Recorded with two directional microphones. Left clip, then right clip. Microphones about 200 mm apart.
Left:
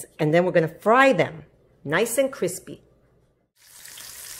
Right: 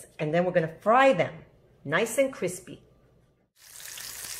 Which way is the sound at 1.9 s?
40° left (ahead or behind).